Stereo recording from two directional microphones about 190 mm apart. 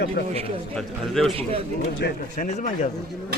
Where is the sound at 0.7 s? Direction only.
Centre (ahead or behind).